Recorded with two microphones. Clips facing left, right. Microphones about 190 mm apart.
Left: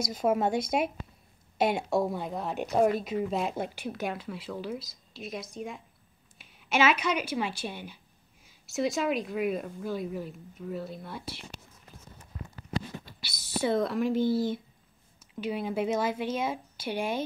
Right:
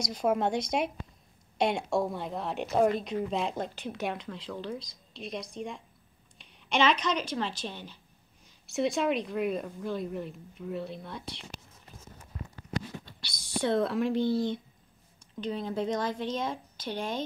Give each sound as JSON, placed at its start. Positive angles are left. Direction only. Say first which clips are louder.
{"t": 0.0, "sound": "a woman's voice", "louder": "left 1 dB", "side_deg": 5}
{"t": 13.2, "sound": "a woman's voice", "louder": "left 1 dB", "side_deg": 5}